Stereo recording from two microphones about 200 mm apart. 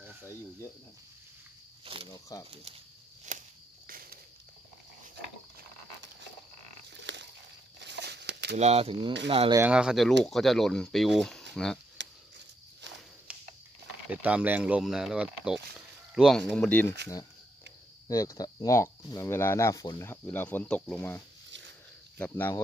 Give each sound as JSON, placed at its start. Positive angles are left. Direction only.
{"t": 2.0, "sound": "speech", "side_deg": 15}
{"t": 2.5, "sound": "speech", "side_deg": -30}
{"t": 3.3, "sound": "walk", "side_deg": -40}
{"t": 6.9, "sound": "a sound", "side_deg": -60}
{"t": 8.5, "sound": "speech", "side_deg": -30}
{"t": 9.6, "sound": "speech", "side_deg": -5}
{"t": 13.3, "sound": "a sound", "side_deg": -5}
{"t": 14.1, "sound": "speech", "side_deg": -5}
{"t": 18.0, "sound": "speech", "side_deg": 15}
{"t": 21.5, "sound": "a sound", "side_deg": -65}
{"t": 22.2, "sound": "speech", "side_deg": 10}